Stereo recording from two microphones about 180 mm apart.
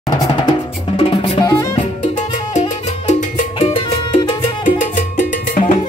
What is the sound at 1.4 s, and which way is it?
Music, 20° left (ahead or behind).